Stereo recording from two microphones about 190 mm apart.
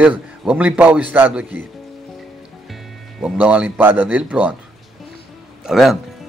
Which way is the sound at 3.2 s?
5° right (ahead or behind).